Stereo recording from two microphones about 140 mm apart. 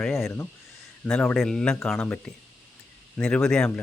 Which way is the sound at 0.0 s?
Centre (ahead or behind).